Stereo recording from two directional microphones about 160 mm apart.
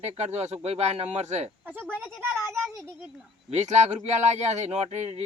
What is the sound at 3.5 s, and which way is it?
Speech, 45° right (ahead or behind).